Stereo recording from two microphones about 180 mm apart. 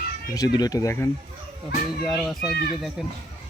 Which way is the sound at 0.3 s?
20° left (ahead or behind).